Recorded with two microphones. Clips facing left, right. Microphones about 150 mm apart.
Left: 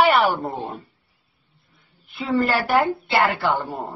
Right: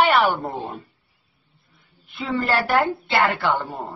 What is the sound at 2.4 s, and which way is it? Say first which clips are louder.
A woman's voice: right 1 dB; 5° left (ahead or behind).